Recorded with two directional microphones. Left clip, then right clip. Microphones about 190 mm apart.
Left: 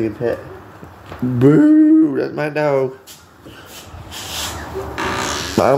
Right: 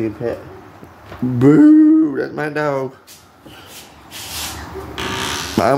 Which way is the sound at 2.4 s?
15° right (ahead or behind).